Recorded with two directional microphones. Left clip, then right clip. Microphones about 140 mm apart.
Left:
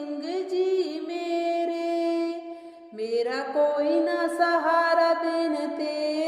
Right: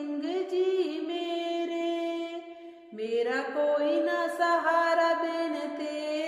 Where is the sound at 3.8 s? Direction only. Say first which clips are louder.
Left 3 dB; 25° left (ahead or behind).